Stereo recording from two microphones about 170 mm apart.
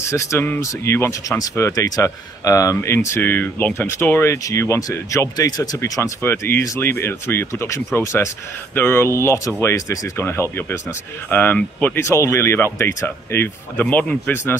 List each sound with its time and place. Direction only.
0.1 s speech: 15° left (ahead or behind)